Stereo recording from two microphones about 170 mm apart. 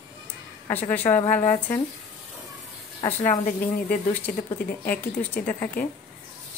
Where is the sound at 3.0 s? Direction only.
40° left (ahead or behind).